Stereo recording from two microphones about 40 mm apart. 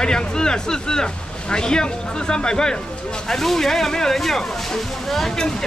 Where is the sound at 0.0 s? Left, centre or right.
Centre.